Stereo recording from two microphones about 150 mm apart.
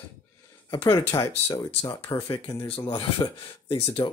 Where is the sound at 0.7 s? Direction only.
20° left (ahead or behind).